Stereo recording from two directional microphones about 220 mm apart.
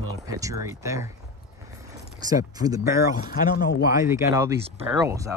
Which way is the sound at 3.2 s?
40° left (ahead or behind).